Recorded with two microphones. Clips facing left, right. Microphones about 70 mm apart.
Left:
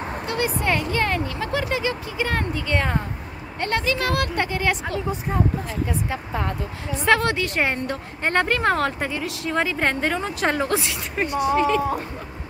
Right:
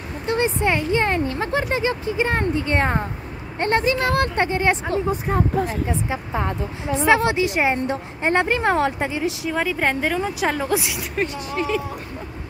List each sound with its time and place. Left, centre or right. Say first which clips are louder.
0.3 s speech: right 4 dB; right
5.3 s speech: right 2 dB; right
5.7 s a woman's voice: right 2 dB; right; by 11.0 s centre
11.1 s a woman's voice: left 5 dB; centre